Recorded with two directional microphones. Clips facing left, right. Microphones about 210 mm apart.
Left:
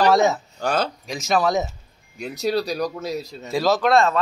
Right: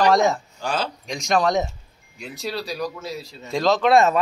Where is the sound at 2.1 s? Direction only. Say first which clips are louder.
Left 7 dB; 40° left (ahead or behind).